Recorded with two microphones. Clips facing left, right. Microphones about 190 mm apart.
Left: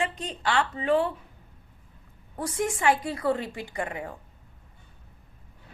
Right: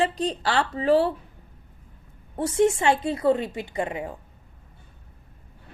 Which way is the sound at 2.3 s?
25° right (ahead or behind).